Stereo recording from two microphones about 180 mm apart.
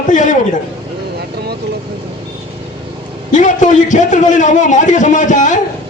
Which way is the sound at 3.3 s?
45° left (ahead or behind).